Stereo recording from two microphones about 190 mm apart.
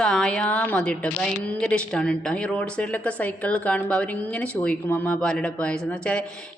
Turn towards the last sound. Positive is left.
turn(degrees=5)  # may be behind; listen again after turning